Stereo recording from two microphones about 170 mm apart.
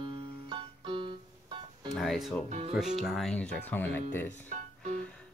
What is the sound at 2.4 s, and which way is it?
Speech, 40° right (ahead or behind).